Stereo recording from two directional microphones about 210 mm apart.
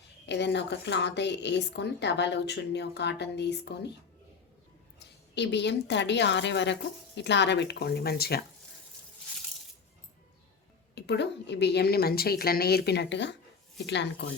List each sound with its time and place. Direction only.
0.3 s speech: 55° left (ahead or behind)
4.9 s a woman's voice: 55° left (ahead or behind)
10.9 s a woman's voice: 55° left (ahead or behind)